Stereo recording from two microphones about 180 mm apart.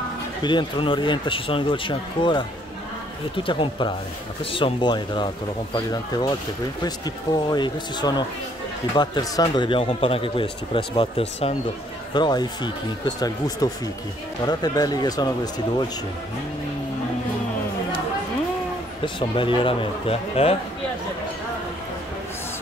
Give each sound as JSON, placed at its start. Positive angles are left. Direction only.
{"t": 0.4, "sound": "speech", "side_deg": 25}
{"t": 3.4, "sound": "speech", "side_deg": 30}
{"t": 7.4, "sound": "speech", "side_deg": 25}
{"t": 19.1, "sound": "speech", "side_deg": 30}